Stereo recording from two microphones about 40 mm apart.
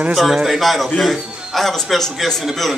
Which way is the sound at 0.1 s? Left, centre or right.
Centre.